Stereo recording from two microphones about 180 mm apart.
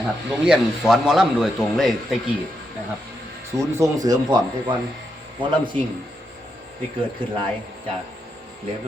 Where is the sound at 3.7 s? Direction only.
20° right (ahead or behind).